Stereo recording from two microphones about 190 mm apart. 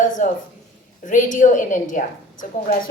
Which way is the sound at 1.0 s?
40° left (ahead or behind).